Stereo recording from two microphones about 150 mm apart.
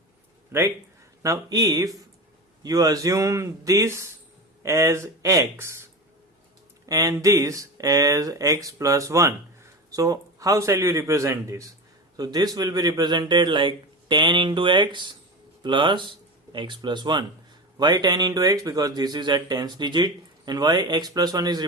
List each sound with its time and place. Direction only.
0.5 s speech: 15° right (ahead or behind)